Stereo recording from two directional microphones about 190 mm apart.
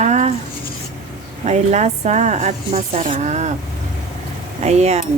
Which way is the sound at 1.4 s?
35° right (ahead or behind).